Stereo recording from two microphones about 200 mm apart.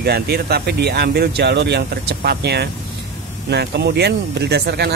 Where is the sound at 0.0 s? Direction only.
50° right (ahead or behind).